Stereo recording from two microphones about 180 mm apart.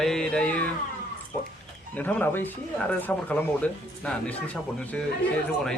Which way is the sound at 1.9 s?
10° left (ahead or behind).